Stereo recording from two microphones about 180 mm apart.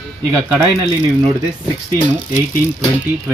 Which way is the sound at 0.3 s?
15° right (ahead or behind).